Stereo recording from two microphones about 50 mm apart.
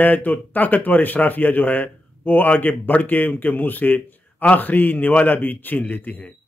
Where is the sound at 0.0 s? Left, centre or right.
Left.